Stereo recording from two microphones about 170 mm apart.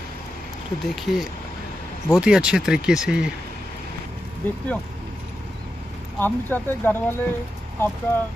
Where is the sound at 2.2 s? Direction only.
5° right (ahead or behind).